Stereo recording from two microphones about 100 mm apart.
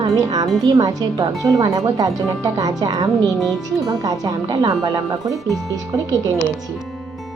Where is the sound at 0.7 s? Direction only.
35° right (ahead or behind).